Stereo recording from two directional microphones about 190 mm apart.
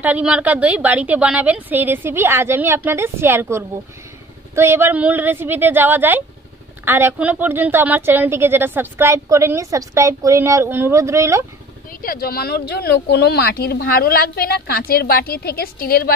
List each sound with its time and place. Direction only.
0.0 s a woman's voice: 5° right (ahead or behind)
11.9 s speech: 50° left (ahead or behind)